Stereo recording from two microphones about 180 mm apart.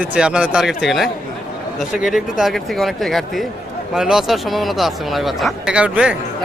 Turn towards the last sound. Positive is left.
turn(degrees=-5)  # may be behind; listen again after turning